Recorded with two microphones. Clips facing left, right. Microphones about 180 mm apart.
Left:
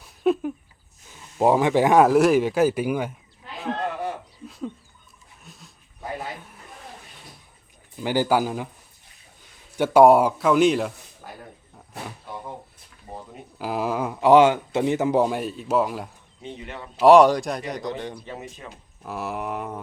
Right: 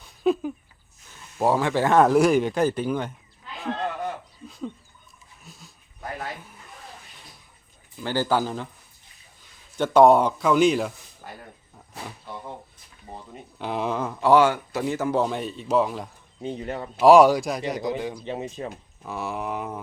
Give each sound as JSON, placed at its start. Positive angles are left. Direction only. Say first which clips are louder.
{"t": 0.0, "sound": "a sound", "louder": "left 1 dB", "side_deg": 0}
{"t": 1.4, "sound": "speech", "louder": "left 3 dB", "side_deg": 15}
{"t": 2.0, "sound": "speech", "louder": "left 1 dB", "side_deg": 0}
{"t": 4.0, "sound": "a sound", "louder": "left 1 dB", "side_deg": 5}
{"t": 5.4, "sound": "dog", "louder": "even", "side_deg": 0}
{"t": 8.0, "sound": "speech", "louder": "left 2 dB", "side_deg": 15}
{"t": 9.7, "sound": "a man's voice", "louder": "left 1 dB", "side_deg": 10}
{"t": 13.6, "sound": "speech", "louder": "left 1 dB", "side_deg": 5}
{"t": 16.4, "sound": "speech", "louder": "right 6 dB", "side_deg": -40}
{"t": 17.0, "sound": "speech", "louder": "even", "side_deg": 0}
{"t": 18.2, "sound": "speech", "louder": "right 6 dB", "side_deg": -25}
{"t": 19.0, "sound": "speech", "louder": "even", "side_deg": 5}